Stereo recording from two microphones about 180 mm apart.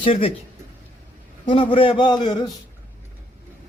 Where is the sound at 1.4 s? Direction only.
30° left (ahead or behind).